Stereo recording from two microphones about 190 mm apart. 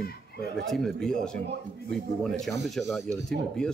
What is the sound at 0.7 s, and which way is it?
Speech, centre (ahead or behind).